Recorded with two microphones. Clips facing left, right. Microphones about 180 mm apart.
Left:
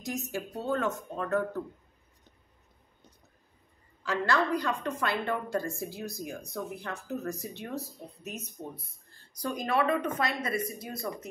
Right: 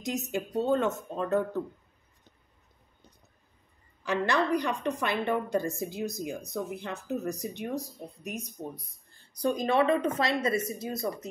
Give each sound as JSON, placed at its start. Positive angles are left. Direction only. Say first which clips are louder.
{"t": 0.0, "sound": "a woman's voice", "louder": "right 3 dB", "side_deg": -20}
{"t": 4.0, "sound": "a woman's voice", "louder": "right 1 dB", "side_deg": -20}